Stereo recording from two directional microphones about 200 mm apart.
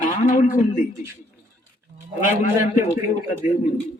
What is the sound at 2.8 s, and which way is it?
Speech, 40° left (ahead or behind).